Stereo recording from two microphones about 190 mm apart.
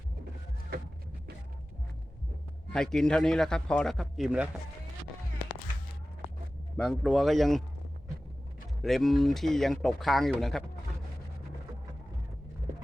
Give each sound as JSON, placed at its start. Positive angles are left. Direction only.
{"t": 0.7, "sound": "a sound", "side_deg": -60}
{"t": 2.7, "sound": "speech", "side_deg": 5}
{"t": 6.7, "sound": "speech", "side_deg": 0}
{"t": 8.8, "sound": "speech", "side_deg": 0}